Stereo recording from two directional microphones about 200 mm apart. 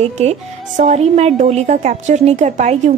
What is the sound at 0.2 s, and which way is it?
Speech, 35° right (ahead or behind).